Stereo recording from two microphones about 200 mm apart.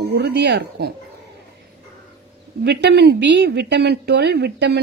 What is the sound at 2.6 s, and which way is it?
Speech, 55° right (ahead or behind).